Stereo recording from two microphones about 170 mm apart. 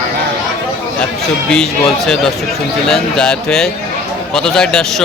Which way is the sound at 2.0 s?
5° left (ahead or behind).